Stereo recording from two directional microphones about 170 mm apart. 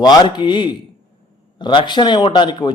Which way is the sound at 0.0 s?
25° left (ahead or behind).